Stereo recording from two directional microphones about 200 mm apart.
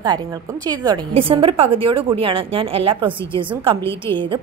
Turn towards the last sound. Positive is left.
turn(degrees=-25)  # may be behind; listen again after turning